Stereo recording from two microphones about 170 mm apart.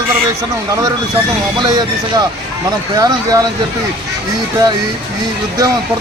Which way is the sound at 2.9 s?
20° right (ahead or behind).